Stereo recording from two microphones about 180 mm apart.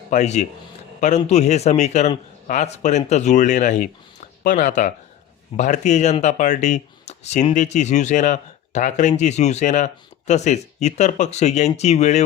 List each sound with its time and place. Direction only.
0.1 s speech: 40° left (ahead or behind)